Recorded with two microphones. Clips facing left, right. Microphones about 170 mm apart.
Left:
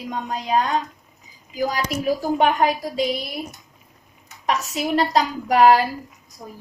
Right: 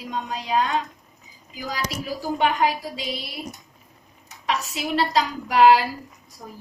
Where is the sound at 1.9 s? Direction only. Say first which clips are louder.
Left 6 dB; 45° left (ahead or behind).